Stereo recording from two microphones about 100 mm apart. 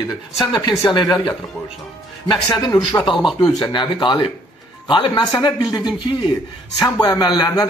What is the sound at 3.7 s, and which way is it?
Speech, 50° left (ahead or behind).